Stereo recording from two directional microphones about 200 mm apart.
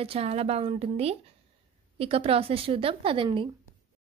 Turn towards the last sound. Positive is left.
turn(degrees=-25)  # may be behind; listen again after turning